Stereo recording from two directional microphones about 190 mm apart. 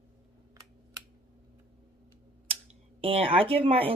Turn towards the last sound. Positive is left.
turn(degrees=-30)  # may be behind; listen again after turning